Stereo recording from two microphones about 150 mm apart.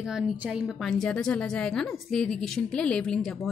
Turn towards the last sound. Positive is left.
turn(degrees=5)  # may be behind; listen again after turning